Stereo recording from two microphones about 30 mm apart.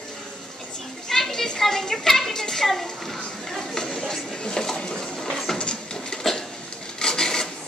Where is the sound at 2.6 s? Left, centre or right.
Centre.